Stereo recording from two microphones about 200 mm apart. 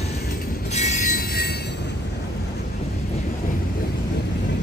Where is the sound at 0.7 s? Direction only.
35° left (ahead or behind).